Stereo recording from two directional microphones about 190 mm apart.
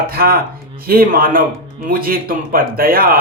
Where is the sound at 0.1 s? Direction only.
50° right (ahead or behind).